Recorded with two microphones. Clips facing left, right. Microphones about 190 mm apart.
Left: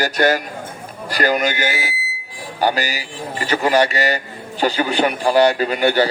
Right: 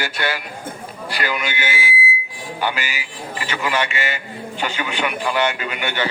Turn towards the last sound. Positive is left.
turn(degrees=35)  # may be behind; listen again after turning